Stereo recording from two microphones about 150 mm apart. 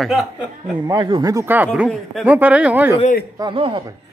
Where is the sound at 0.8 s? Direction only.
30° right (ahead or behind); by 3.0 s 10° right (ahead or behind).